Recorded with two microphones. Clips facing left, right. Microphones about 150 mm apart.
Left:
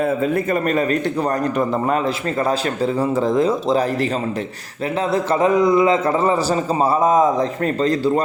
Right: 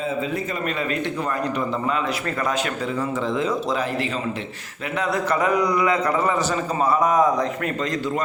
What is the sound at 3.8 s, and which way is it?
Speech, 40° left (ahead or behind).